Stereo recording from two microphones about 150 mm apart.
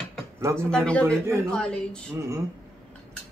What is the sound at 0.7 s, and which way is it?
Speech, 5° left (ahead or behind).